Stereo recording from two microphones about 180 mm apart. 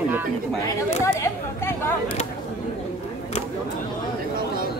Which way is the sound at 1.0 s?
15° left (ahead or behind).